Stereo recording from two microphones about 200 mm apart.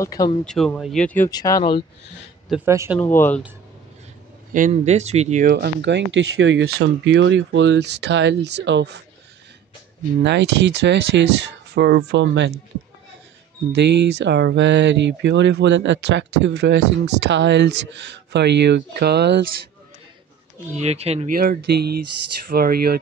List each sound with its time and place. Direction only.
0.0 s speech: 15° left (ahead or behind)
0.5 s speech: centre (ahead or behind); by 1.9 s 25° left (ahead or behind)
2.5 s speech: 15° right (ahead or behind)
3.0 s speech: 10° left (ahead or behind)
4.6 s speech: 35° right (ahead or behind)
5.5 s speech: 55° right (ahead or behind)
10.2 s speech: 60° right (ahead or behind)
13.7 s speech: 60° right (ahead or behind)
20.8 s speech: 30° right (ahead or behind)
21.4 s speech: 50° right (ahead or behind)